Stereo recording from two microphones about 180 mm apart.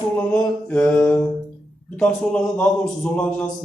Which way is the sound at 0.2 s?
10° left (ahead or behind).